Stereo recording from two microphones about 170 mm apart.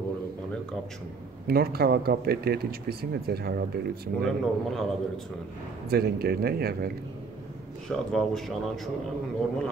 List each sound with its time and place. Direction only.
1.5 s speech: 65° right (ahead or behind)
4.2 s a man's voice: centre (ahead or behind)
5.9 s speech: 65° right (ahead or behind)
7.9 s a man's voice: centre (ahead or behind)